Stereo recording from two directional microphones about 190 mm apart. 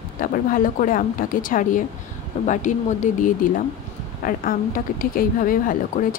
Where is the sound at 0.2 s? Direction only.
45° left (ahead or behind).